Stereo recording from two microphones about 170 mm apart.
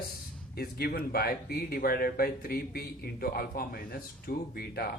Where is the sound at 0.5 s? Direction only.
65° left (ahead or behind).